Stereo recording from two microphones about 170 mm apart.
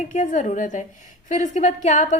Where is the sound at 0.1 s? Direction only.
45° left (ahead or behind).